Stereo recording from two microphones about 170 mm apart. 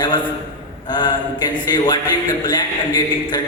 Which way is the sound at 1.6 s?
25° left (ahead or behind).